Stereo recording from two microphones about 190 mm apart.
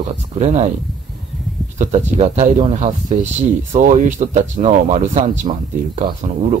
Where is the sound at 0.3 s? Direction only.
35° right (ahead or behind).